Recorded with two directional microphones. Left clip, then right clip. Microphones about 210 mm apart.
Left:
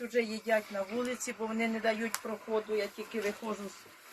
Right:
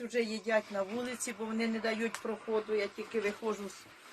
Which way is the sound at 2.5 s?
20° right (ahead or behind).